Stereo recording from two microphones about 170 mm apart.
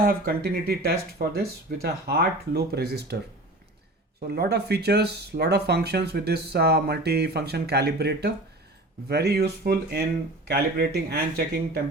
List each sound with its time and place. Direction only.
0.0 s speech: 65° right (ahead or behind)
4.3 s speech: 70° right (ahead or behind)